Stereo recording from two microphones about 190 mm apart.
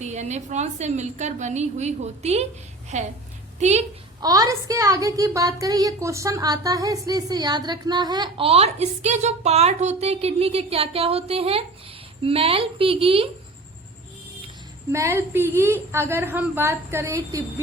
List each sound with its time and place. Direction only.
0.0 s a woman's voice: 35° right (ahead or behind)
4.2 s a woman's voice: 20° right (ahead or behind)
14.9 s a woman's voice: 15° right (ahead or behind)